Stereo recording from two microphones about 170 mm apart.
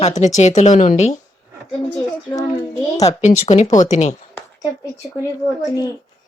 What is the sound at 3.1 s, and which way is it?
Speech, 45° left (ahead or behind).